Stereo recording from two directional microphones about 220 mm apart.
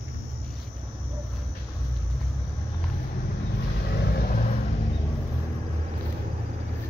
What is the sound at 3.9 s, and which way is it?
Vehicle, 40° left (ahead or behind).